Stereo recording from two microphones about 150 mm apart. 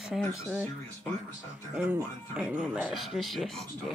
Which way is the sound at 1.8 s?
5° right (ahead or behind).